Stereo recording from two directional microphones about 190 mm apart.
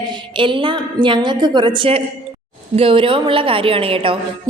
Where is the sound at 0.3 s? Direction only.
25° right (ahead or behind).